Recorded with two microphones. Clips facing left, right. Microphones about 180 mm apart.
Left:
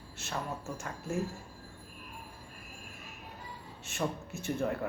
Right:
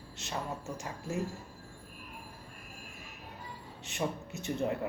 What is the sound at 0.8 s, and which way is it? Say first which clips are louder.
Speech: left 3 dB; 15° right (ahead or behind).